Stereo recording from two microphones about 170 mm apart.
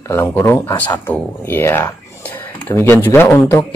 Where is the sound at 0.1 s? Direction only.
10° left (ahead or behind).